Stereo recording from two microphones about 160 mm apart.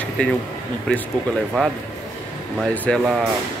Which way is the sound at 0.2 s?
10° left (ahead or behind).